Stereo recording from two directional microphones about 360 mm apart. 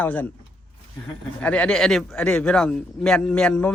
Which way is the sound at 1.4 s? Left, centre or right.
Centre.